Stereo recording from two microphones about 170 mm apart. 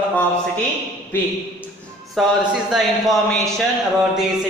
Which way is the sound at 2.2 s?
Centre (ahead or behind).